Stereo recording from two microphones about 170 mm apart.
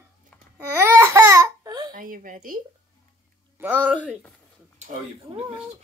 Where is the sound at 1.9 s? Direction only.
55° right (ahead or behind).